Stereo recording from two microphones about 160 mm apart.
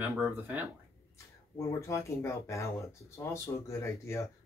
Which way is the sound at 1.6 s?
20° left (ahead or behind).